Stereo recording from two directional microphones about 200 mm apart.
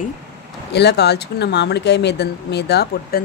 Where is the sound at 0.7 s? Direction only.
55° left (ahead or behind).